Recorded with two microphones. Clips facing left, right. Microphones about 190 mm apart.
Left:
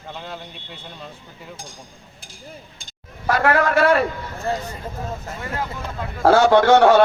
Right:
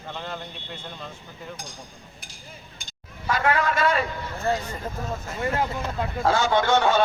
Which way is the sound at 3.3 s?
70° left (ahead or behind).